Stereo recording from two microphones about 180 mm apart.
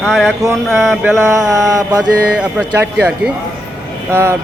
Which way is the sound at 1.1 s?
15° right (ahead or behind).